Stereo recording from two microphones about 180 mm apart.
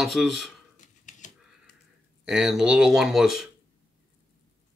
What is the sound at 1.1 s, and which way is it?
Typewriter, 45° left (ahead or behind).